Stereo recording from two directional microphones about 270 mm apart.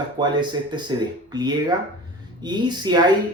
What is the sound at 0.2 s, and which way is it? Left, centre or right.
Speech, centre.